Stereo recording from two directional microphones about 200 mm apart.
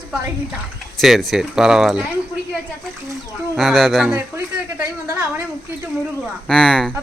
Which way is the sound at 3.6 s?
Centre (ahead or behind).